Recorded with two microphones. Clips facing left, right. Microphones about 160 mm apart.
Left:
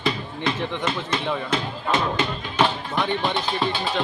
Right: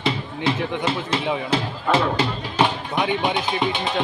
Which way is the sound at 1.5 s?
30° right (ahead or behind).